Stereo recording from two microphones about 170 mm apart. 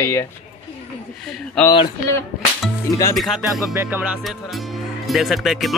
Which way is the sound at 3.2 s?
Centre (ahead or behind).